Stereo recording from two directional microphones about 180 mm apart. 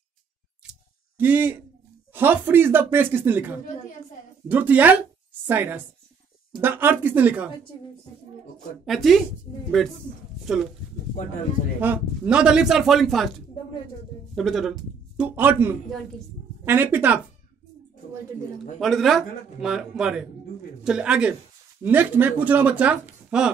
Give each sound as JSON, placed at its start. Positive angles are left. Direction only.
{"t": 1.1, "sound": "speech", "side_deg": -10}
{"t": 8.8, "sound": "a man's voice", "side_deg": 0}
{"t": 11.8, "sound": "a man's voice", "side_deg": -10}
{"t": 14.3, "sound": "a man's voice", "side_deg": 0}
{"t": 18.8, "sound": "a man's voice", "side_deg": 0}